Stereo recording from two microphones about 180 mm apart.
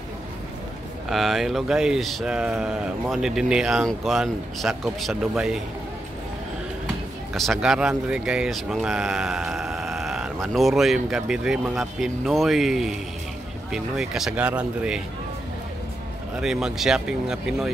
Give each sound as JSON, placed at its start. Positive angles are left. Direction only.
{"t": 1.0, "sound": "speech", "side_deg": 0}
{"t": 7.3, "sound": "speech", "side_deg": 0}
{"t": 16.3, "sound": "speech", "side_deg": -5}